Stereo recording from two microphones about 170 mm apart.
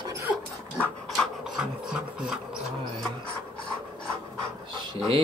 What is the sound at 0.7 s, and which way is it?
Dog, centre (ahead or behind).